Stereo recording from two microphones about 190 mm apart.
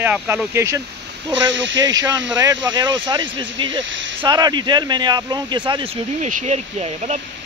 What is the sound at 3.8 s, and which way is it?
Speech, 75° right (ahead or behind).